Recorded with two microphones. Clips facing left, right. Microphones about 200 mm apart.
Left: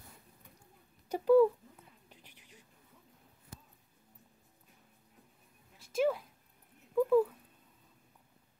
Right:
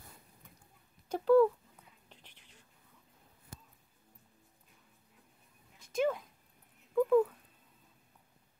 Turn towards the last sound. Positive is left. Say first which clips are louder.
# even
turn(degrees=5)  # may be behind; listen again after turning